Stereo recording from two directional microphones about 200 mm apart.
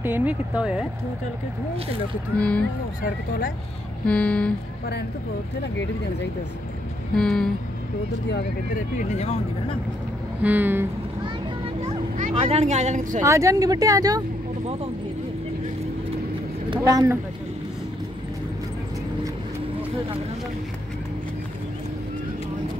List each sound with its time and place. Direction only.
0.0 s speech: 10° right (ahead or behind)
2.3 s speech: 5° left (ahead or behind)
3.0 s speech: 45° left (ahead or behind)
4.0 s speech: 5° left (ahead or behind)
7.2 s speech: 5° left (ahead or behind)
8.3 s speech: 50° left (ahead or behind); by 9.8 s 30° left (ahead or behind)
10.4 s speech: 10° right (ahead or behind)
11.8 s speech: 30° right (ahead or behind)
13.2 s speech: 15° right (ahead or behind)
16.7 s speech: 20° right (ahead or behind)